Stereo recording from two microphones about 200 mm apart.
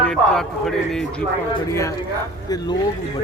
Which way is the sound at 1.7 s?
15° left (ahead or behind).